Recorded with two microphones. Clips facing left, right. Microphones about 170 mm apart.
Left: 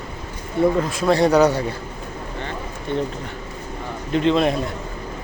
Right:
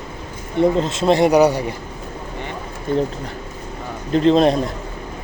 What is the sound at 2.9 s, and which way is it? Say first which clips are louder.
Speech: right 4 dB; 40° right (ahead or behind).